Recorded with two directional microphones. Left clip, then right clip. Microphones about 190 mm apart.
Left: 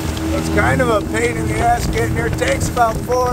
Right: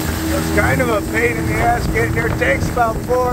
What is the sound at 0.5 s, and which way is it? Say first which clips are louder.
Speech: left 1 dB; 15° left (ahead or behind).